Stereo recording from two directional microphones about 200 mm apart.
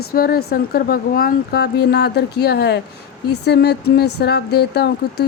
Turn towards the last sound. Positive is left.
turn(degrees=55)  # may be behind; listen again after turning